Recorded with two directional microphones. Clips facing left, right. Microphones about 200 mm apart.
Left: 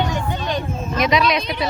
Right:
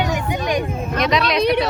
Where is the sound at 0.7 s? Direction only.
60° right (ahead or behind).